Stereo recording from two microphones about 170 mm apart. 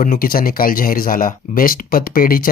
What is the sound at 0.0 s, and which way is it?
Speech, 55° left (ahead or behind).